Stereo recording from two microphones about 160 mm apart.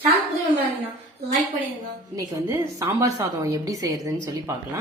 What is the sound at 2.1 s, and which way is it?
A woman's voice, 20° right (ahead or behind).